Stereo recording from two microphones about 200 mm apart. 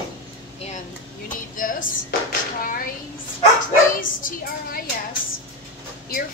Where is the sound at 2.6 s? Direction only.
45° left (ahead or behind).